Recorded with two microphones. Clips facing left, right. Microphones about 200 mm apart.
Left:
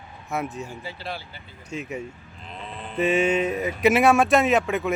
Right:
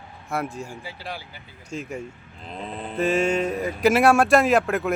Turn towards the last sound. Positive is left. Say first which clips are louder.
# right 1 dB
turn(degrees=0)  # may be behind; listen again after turning